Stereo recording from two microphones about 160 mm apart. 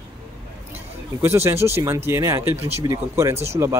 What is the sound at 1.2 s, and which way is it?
Speech, 15° right (ahead or behind).